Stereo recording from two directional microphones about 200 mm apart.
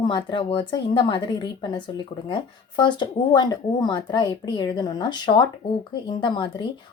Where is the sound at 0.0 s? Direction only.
25° left (ahead or behind).